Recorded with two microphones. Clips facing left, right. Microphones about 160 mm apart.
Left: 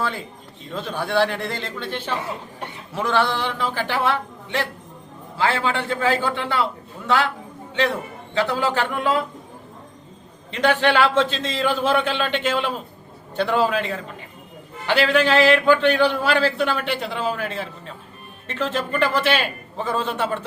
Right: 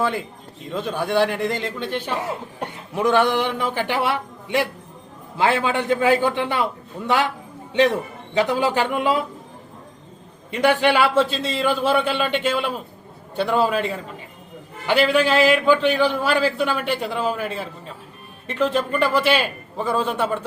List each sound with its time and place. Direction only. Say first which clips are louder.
0.7 s a man's voice: right 2 dB; 15° right (ahead or behind)
8.4 s a man's voice: right 2 dB; 15° right (ahead or behind)
10.5 s a man's voice: right 1 dB; 10° right (ahead or behind)
14.8 s a man's voice: right 1 dB; 10° right (ahead or behind)